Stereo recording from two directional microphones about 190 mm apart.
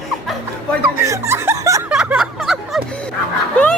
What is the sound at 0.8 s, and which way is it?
Music, 15° right (ahead or behind).